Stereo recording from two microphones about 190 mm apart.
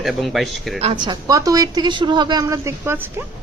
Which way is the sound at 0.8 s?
30° right (ahead or behind).